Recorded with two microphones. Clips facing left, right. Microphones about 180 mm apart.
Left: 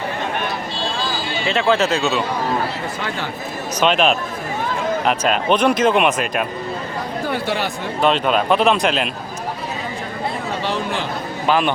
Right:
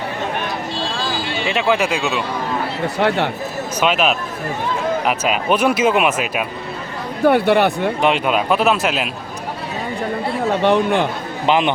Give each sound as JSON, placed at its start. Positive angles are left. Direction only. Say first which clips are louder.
{"t": 1.5, "sound": "speech", "louder": "left 1 dB", "side_deg": -15}
{"t": 2.8, "sound": "speech", "louder": "right 8 dB", "side_deg": -65}
{"t": 3.8, "sound": "speech", "louder": "left 1 dB", "side_deg": -5}
{"t": 7.3, "sound": "speech", "louder": "right 11 dB", "side_deg": -60}
{"t": 8.0, "sound": "speech", "louder": "left 2 dB", "side_deg": -10}
{"t": 10.6, "sound": "speech", "louder": "right 9 dB", "side_deg": -60}
{"t": 11.4, "sound": "speech", "louder": "right 2 dB", "side_deg": -20}